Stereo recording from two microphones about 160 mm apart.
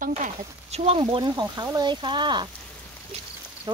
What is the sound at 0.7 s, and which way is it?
Speech, 40° right (ahead or behind).